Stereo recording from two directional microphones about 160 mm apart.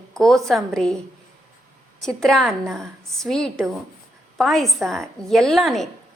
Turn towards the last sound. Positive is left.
turn(degrees=0)  # may be behind; listen again after turning